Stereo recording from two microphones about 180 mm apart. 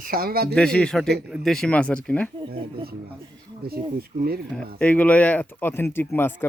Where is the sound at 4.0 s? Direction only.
60° right (ahead or behind).